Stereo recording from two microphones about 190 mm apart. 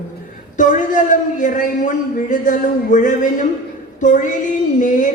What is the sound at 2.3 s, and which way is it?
A woman's voice, 40° left (ahead or behind).